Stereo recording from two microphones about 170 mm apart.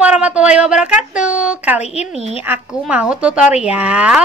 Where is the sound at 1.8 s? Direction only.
35° left (ahead or behind).